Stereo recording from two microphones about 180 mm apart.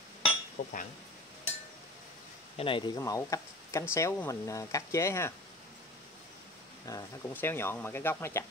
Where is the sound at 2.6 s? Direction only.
30° left (ahead or behind).